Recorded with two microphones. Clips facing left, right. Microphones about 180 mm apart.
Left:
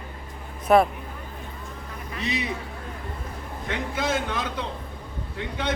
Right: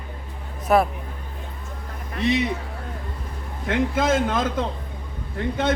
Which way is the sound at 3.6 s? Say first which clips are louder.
Right 7 dB; 50° right (ahead or behind).